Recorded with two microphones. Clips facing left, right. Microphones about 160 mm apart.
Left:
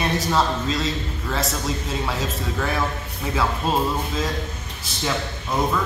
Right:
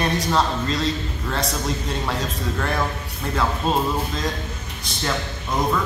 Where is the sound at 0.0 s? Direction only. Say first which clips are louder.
Even; centre (ahead or behind).